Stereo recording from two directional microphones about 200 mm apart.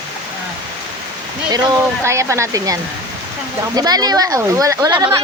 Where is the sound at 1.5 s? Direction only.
15° right (ahead or behind).